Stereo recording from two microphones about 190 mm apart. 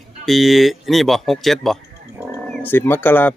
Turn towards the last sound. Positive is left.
turn(degrees=10)  # may be behind; listen again after turning